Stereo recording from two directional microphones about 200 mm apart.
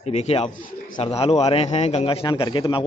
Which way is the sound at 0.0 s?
30° left (ahead or behind).